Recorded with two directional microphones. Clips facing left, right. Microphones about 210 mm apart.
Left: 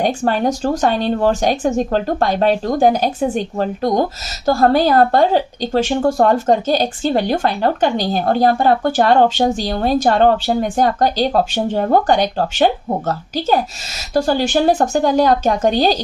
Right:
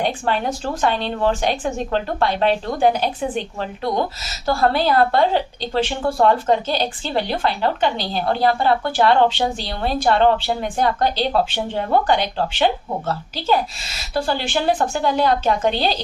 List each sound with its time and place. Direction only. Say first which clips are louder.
0.0 s a woman's voice: left 5 dB; 45° left (ahead or behind)